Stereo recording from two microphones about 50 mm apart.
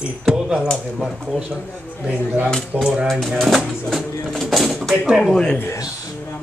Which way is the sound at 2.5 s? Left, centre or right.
Centre.